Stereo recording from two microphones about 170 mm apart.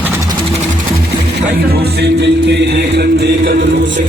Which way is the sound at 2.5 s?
85° right.